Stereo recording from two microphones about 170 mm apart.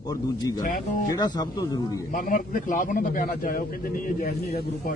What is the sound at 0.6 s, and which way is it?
Speech, 50° left (ahead or behind).